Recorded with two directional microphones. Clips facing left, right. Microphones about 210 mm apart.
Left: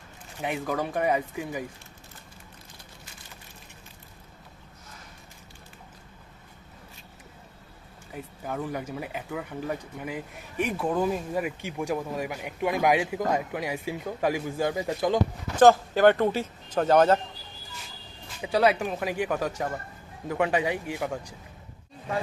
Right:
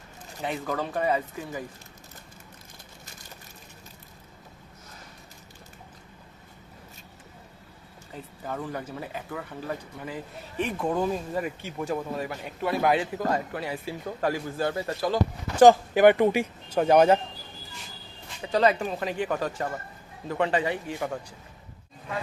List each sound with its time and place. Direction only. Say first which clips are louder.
0.4 s speech: left 1 dB; 10° left (ahead or behind)
8.1 s speech: left 1 dB; 10° left (ahead or behind)
15.5 s speech: right 2 dB; 15° right (ahead or behind)
18.4 s speech: even; 10° left (ahead or behind)